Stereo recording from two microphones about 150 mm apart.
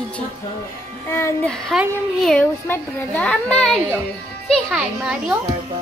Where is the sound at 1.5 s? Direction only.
5° left (ahead or behind).